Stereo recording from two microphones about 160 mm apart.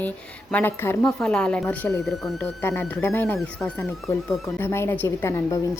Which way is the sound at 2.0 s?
Centre (ahead or behind).